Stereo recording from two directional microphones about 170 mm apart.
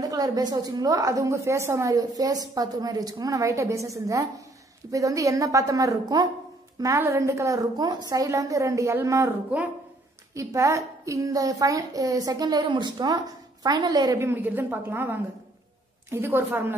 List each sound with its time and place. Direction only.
0.0 s a woman's voice: 20° right (ahead or behind)